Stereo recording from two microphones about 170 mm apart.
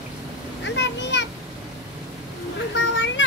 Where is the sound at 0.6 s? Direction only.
90° left.